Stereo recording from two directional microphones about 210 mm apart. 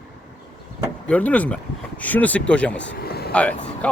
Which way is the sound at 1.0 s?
5° left (ahead or behind).